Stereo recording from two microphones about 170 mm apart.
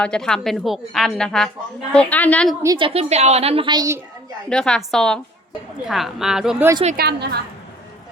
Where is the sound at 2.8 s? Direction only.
35° right (ahead or behind).